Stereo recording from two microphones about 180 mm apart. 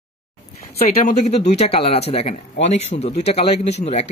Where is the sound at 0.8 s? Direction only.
35° left (ahead or behind).